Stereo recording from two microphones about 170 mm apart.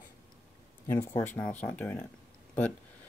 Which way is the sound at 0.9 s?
20° left (ahead or behind).